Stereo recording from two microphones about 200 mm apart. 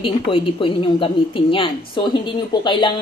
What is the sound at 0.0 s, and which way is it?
Speech, 25° left (ahead or behind).